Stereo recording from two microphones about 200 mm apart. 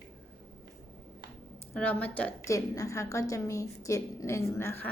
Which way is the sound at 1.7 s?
10° left (ahead or behind).